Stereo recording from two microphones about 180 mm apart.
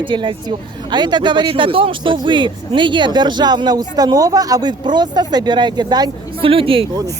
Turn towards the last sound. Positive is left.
turn(degrees=-30)  # may be behind; listen again after turning